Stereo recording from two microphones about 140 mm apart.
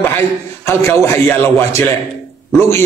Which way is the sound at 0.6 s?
15° left (ahead or behind).